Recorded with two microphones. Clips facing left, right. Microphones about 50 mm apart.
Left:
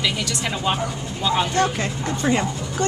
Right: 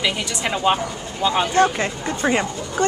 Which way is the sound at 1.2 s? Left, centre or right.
Centre.